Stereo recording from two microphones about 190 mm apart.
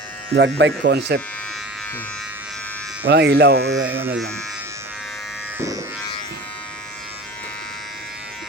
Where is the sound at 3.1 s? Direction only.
60° right (ahead or behind).